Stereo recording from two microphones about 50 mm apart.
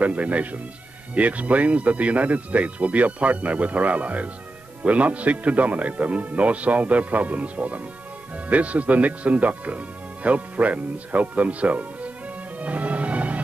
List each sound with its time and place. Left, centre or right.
0.0 s speech: right
12.5 s music: right